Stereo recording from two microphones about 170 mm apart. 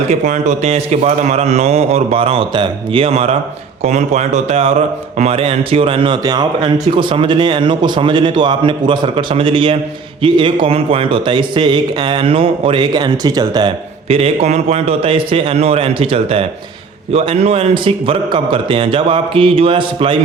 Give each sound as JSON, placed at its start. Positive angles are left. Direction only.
{"t": 0.1, "sound": "a man's voice", "side_deg": -40}